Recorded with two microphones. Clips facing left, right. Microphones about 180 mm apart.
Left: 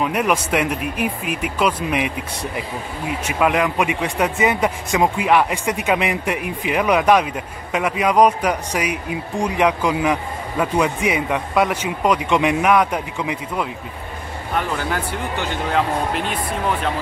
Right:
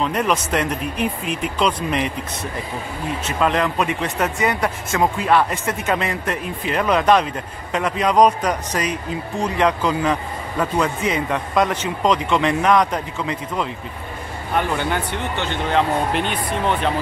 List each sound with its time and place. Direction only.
0.0 s speech: 10° left (ahead or behind)